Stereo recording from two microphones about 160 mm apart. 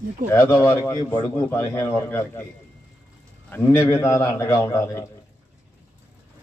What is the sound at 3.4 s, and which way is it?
A man's voice, 15° left (ahead or behind).